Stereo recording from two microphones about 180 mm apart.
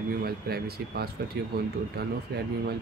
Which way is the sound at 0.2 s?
60° right (ahead or behind).